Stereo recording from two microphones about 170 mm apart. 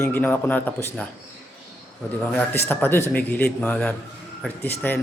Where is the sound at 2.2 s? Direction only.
5° left (ahead or behind).